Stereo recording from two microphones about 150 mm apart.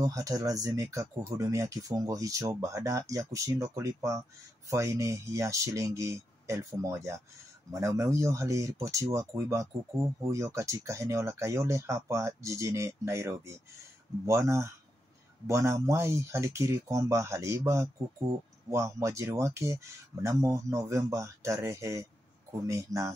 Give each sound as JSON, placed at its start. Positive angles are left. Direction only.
{"t": 0.0, "sound": "speech", "side_deg": -20}